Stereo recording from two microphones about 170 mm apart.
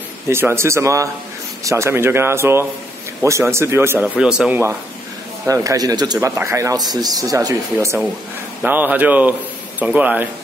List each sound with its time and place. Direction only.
0.3 s a man's voice: 15° right (ahead or behind)